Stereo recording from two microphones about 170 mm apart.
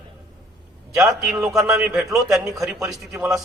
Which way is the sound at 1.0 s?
5° right (ahead or behind).